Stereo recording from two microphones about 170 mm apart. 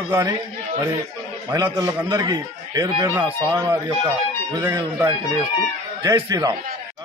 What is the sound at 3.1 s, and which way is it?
Speech, 10° right (ahead or behind).